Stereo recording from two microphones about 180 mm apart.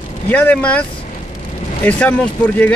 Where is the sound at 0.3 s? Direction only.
10° left (ahead or behind).